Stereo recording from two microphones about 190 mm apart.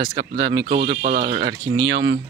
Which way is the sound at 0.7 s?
60° right (ahead or behind).